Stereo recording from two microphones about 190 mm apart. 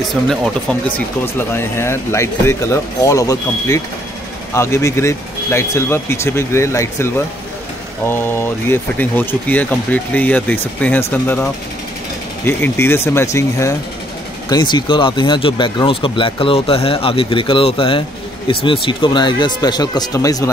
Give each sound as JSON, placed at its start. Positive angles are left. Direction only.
{"t": 0.0, "sound": "speech", "side_deg": 0}
{"t": 8.1, "sound": "speech", "side_deg": 10}